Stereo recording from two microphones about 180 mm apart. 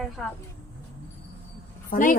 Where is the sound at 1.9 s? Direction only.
50° left (ahead or behind).